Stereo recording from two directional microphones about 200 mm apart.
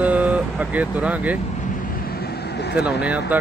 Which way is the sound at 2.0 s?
50° left (ahead or behind).